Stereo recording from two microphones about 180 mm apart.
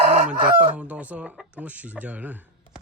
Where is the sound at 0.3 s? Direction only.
5° right (ahead or behind).